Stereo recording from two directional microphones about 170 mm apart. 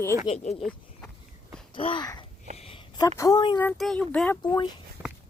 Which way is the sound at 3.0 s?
20° left (ahead or behind).